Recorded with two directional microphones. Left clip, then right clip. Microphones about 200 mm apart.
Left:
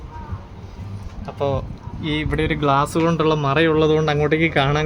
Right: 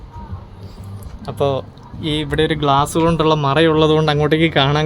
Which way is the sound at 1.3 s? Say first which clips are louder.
Right 4 dB; 25° right (ahead or behind).